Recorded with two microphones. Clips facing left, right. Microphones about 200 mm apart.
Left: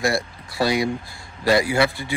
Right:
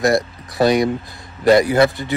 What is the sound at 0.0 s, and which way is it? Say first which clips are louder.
Speech: right 6 dB; 20° right (ahead or behind).